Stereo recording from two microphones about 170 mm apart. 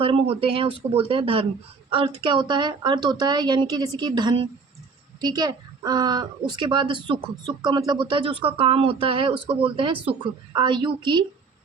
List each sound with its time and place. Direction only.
0.0 s speech: 35° right (ahead or behind)